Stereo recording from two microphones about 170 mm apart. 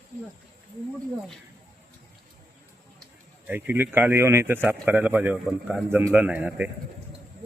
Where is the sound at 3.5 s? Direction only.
10° right (ahead or behind).